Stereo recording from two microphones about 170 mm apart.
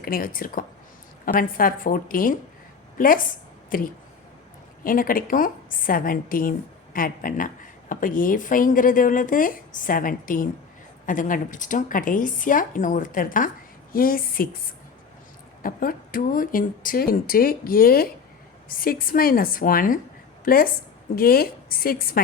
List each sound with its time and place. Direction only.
0.0 s a woman's voice: 55° left (ahead or behind)
15.6 s speech: 55° left (ahead or behind)